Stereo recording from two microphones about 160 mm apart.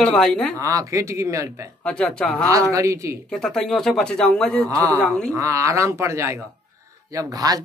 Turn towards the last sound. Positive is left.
turn(degrees=-25)  # may be behind; listen again after turning